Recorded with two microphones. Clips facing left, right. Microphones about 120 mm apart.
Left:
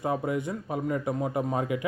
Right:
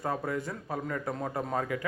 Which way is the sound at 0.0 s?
20° left (ahead or behind).